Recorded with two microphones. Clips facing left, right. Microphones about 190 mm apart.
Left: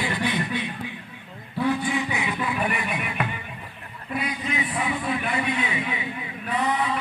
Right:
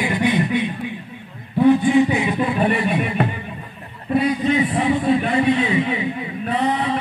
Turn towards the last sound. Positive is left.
turn(degrees=-30)  # may be behind; listen again after turning